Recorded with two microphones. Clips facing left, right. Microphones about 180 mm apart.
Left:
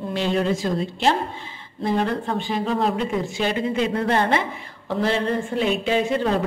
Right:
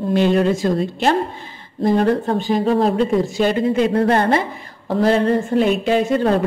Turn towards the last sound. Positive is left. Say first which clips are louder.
# right 5 dB
turn(degrees=-45)  # may be behind; listen again after turning